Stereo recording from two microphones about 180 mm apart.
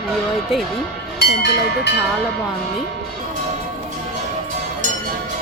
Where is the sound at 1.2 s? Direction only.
70° left (ahead or behind).